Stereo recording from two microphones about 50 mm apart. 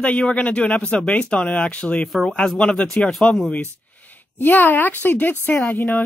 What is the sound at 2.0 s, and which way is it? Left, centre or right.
Speech, centre.